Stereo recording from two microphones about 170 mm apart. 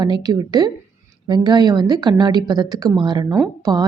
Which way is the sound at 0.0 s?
25° right (ahead or behind).